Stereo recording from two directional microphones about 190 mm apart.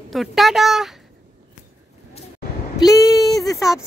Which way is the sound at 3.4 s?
15° left (ahead or behind).